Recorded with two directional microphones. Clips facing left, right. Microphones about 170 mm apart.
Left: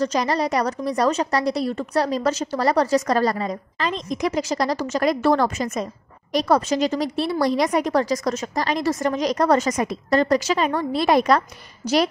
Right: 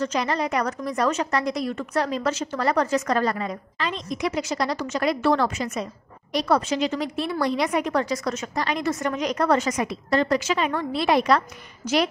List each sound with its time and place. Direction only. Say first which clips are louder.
0.0 s a woman's voice: left 3 dB; 35° left (ahead or behind)